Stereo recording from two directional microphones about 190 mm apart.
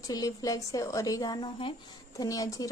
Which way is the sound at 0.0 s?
20° left (ahead or behind).